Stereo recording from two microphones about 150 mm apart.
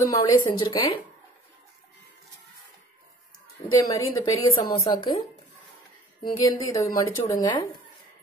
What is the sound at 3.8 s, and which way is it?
A woman's voice, 25° left (ahead or behind).